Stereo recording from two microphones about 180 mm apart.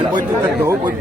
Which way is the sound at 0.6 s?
10° right (ahead or behind).